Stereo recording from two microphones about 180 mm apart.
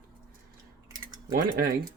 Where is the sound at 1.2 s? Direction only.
55° right (ahead or behind).